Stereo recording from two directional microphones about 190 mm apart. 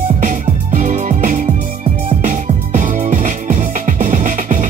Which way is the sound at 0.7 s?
40° right (ahead or behind).